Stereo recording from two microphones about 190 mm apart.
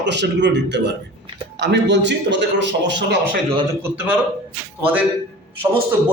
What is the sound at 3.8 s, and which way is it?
Speech, 10° right (ahead or behind).